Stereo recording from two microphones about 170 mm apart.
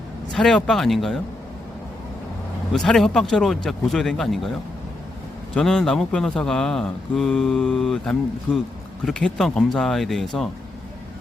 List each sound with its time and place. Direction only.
0.3 s speech: 5° left (ahead or behind)
2.7 s speech: 5° left (ahead or behind)
5.5 s speech: 5° left (ahead or behind)
8.5 s speech: 25° left (ahead or behind)
9.0 s speech: 5° left (ahead or behind)